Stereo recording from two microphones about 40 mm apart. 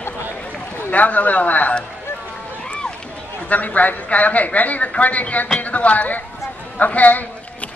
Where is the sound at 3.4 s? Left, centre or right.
Left.